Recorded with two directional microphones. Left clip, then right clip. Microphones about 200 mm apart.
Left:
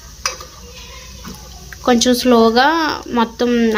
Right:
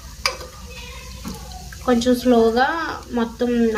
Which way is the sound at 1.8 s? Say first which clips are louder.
Left 4 dB; 55° left (ahead or behind).